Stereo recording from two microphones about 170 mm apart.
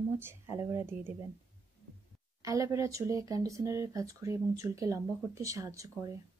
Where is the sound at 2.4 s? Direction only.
20° right (ahead or behind).